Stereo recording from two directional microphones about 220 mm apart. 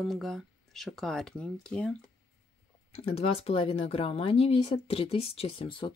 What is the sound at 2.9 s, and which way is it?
Speech, 25° left (ahead or behind).